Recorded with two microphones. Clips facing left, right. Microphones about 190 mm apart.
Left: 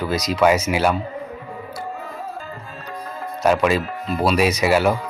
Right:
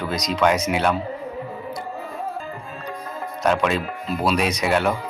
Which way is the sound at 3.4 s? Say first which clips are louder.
Left 3 dB; 5° left (ahead or behind).